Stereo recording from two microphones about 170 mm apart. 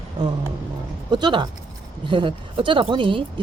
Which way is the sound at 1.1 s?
25° right (ahead or behind).